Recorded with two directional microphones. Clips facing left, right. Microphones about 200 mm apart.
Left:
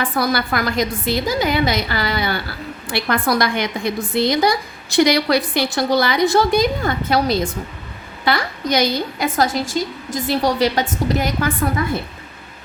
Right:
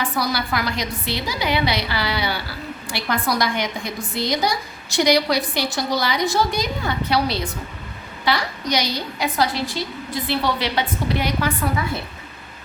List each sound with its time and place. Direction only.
0.0 s a woman's voice: 55° left (ahead or behind)